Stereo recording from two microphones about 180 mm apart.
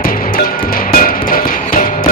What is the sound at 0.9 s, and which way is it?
Music, 50° left (ahead or behind).